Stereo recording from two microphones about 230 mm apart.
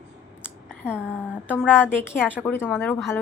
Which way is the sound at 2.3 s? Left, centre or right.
Centre.